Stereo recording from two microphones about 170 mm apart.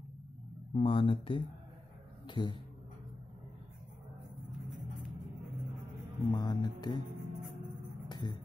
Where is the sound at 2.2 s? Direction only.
25° left (ahead or behind).